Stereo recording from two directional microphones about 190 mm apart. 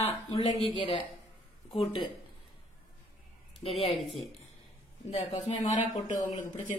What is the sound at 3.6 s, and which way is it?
Speech, 30° left (ahead or behind).